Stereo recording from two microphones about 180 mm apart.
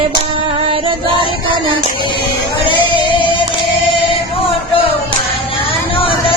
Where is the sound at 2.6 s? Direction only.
25° left (ahead or behind).